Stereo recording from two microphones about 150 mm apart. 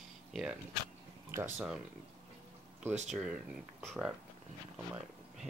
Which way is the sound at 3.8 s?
Centre (ahead or behind).